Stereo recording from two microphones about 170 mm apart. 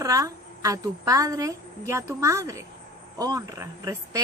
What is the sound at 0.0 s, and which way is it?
A woman's voice, 20° right (ahead or behind).